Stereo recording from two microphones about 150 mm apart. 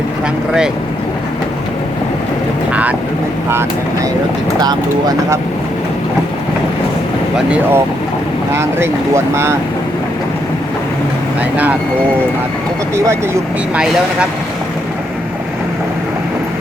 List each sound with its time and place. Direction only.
4.6 s speech: 25° right (ahead or behind)
7.3 s speech: 5° right (ahead or behind)
8.5 s speech: 15° right (ahead or behind)
11.5 s speech: 10° right (ahead or behind)
13.7 s speech: 5° right (ahead or behind)